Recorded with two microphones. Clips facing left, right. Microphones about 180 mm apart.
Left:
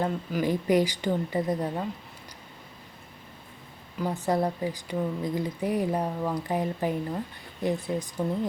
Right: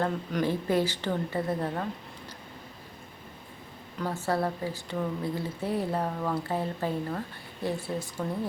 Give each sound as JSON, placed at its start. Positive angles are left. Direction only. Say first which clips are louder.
{"t": 0.0, "sound": "speech", "louder": "left 1 dB", "side_deg": 5}
{"t": 0.4, "sound": "speech", "louder": "left 4 dB", "side_deg": 15}
{"t": 4.0, "sound": "speech", "louder": "left 2 dB", "side_deg": 15}